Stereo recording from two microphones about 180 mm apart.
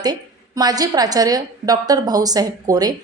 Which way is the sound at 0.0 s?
20° right (ahead or behind).